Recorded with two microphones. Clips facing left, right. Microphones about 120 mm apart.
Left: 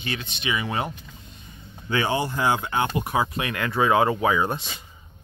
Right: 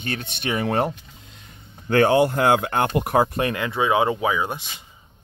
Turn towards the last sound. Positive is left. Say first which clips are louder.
# left 1 dB
turn(degrees=-15)  # may be behind; listen again after turning